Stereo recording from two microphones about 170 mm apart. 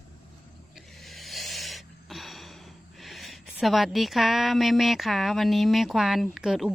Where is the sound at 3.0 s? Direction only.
Centre (ahead or behind).